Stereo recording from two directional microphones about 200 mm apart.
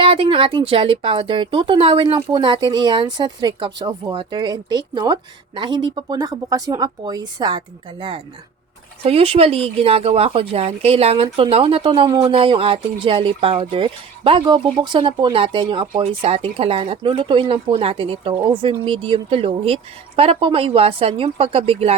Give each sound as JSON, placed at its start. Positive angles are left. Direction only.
{"t": 0.0, "sound": "speech", "side_deg": -25}